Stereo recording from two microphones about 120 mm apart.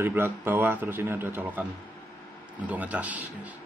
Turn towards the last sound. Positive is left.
turn(degrees=-10)  # may be behind; listen again after turning